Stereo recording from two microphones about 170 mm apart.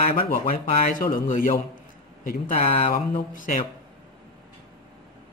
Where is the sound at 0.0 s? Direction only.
60° left (ahead or behind).